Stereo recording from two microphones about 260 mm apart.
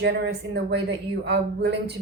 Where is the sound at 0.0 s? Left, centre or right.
Right.